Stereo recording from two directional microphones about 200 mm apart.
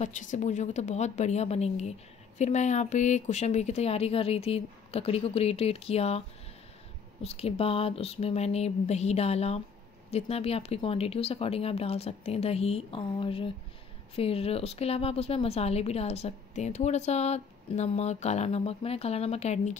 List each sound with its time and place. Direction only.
0.0 s a woman's voice: 40° left (ahead or behind)